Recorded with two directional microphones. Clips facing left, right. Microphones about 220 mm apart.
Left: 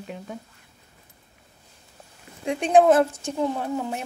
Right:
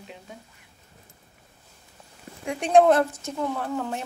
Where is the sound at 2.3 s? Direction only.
40° right (ahead or behind).